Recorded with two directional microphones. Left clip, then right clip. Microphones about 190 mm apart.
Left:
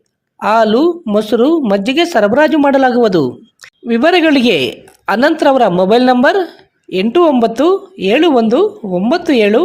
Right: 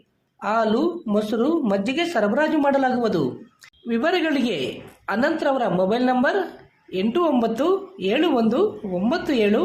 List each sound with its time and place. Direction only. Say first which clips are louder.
0.3 s speech: left 11 dB; 45° left (ahead or behind)